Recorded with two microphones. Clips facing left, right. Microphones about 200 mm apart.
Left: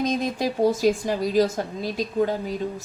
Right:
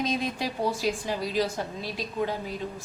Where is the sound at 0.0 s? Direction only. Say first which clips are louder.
Left 5 dB; 45° left (ahead or behind).